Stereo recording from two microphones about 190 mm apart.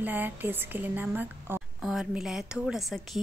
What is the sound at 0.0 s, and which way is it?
Speech, 10° right (ahead or behind).